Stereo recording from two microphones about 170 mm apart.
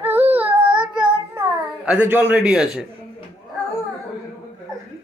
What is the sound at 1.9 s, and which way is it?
A man's voice, 10° right (ahead or behind).